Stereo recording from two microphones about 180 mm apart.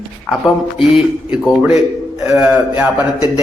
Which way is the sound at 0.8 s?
Centre (ahead or behind).